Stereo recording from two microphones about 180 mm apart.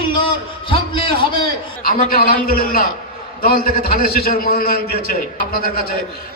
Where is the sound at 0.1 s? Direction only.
30° left (ahead or behind).